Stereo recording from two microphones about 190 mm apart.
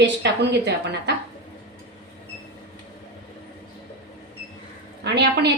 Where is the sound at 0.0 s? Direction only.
65° right (ahead or behind).